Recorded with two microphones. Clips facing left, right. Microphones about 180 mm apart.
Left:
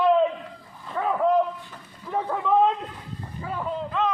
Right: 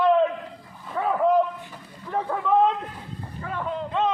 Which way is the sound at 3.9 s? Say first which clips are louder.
Right 2 dB; 30° right (ahead or behind).